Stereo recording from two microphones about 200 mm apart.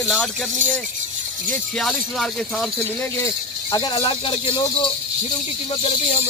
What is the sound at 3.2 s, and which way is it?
Speech, 20° left (ahead or behind).